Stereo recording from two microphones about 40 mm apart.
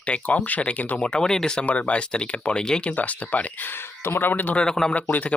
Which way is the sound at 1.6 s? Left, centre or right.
Left.